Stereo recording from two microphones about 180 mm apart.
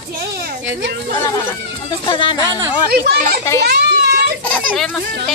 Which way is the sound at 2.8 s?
60° right (ahead or behind).